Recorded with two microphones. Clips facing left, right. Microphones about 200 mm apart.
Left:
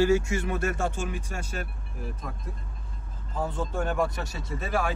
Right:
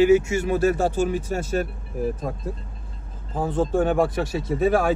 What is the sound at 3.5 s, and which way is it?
Speech, 50° right (ahead or behind).